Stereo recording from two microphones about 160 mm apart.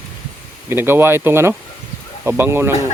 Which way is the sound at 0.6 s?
15° right (ahead or behind).